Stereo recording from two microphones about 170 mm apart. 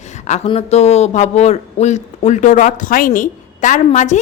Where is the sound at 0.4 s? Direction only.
35° left (ahead or behind).